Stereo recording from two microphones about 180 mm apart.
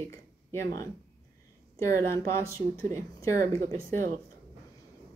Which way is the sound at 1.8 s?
15° left (ahead or behind).